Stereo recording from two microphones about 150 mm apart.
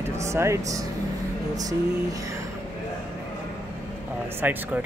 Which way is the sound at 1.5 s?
25° right (ahead or behind).